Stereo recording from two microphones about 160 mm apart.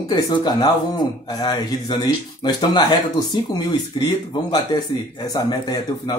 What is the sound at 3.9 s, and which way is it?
Speech, 30° left (ahead or behind).